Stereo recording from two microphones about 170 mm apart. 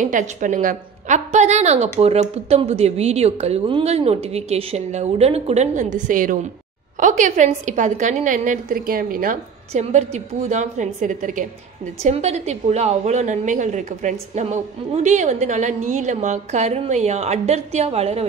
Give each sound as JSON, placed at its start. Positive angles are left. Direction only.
{"t": 0.0, "sound": "a woman's voice", "side_deg": -45}
{"t": 9.7, "sound": "a woman's voice", "side_deg": -40}